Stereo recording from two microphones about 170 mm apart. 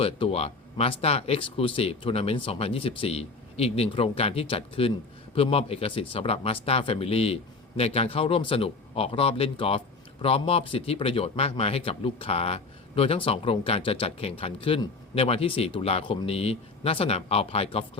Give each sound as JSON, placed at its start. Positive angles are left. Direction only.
{"t": 0.0, "sound": "speech", "side_deg": 35}